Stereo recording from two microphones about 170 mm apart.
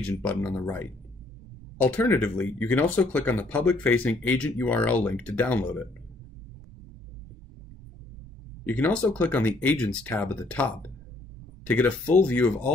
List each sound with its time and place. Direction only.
0.1 s speech: 10° left (ahead or behind)
8.6 s speech: 10° left (ahead or behind)